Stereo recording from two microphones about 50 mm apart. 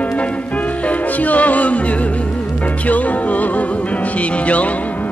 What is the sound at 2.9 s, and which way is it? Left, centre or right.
Music, left.